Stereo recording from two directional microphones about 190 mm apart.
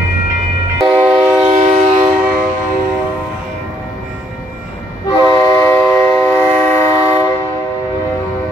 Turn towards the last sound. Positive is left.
turn(degrees=15)  # may be behind; listen again after turning